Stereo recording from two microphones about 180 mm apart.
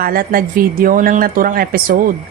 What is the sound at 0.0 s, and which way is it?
A woman's voice, 55° right (ahead or behind).